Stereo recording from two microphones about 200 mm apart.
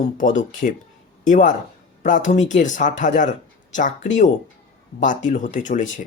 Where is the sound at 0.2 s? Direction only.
40° left (ahead or behind).